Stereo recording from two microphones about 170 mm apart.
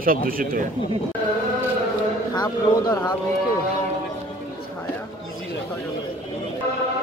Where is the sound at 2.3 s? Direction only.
25° left (ahead or behind).